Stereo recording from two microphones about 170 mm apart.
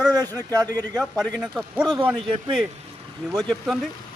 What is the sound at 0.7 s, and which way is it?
A man's voice, 10° left (ahead or behind).